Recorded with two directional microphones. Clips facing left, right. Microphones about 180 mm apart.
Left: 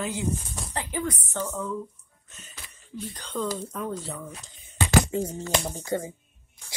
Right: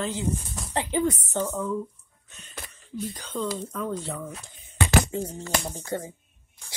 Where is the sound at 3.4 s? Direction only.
5° left (ahead or behind).